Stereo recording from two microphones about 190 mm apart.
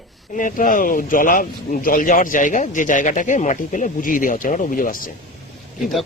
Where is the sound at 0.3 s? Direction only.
45° left (ahead or behind).